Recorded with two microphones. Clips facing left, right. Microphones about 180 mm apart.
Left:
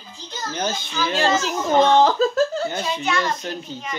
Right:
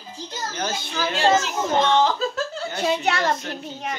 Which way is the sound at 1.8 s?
40° left (ahead or behind).